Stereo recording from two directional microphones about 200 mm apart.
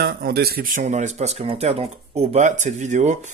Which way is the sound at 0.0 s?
50° right (ahead or behind).